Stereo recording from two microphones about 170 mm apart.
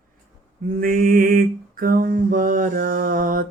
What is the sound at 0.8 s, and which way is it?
Mantra, 55° right (ahead or behind).